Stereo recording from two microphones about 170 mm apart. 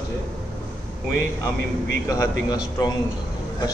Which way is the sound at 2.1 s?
20° left (ahead or behind).